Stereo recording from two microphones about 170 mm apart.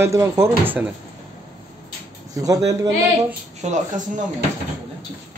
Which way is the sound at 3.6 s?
45° right (ahead or behind).